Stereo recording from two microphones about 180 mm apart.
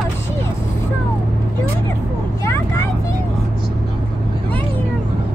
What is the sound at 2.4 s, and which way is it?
Vehicle, 20° left (ahead or behind).